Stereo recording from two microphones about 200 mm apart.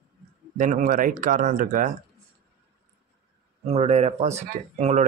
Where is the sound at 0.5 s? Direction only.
40° right (ahead or behind).